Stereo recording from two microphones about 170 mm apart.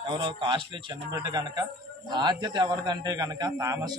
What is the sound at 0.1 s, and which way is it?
A man's voice, 30° right (ahead or behind).